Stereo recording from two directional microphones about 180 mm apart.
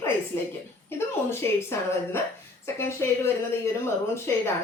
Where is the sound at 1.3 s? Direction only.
15° left (ahead or behind).